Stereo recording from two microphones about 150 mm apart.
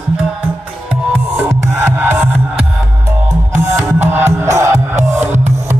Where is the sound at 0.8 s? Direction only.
10° right (ahead or behind).